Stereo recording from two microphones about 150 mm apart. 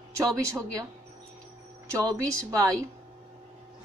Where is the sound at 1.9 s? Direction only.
20° right (ahead or behind).